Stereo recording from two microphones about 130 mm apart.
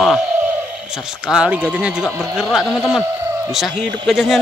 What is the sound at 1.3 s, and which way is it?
Speech, 10° right (ahead or behind).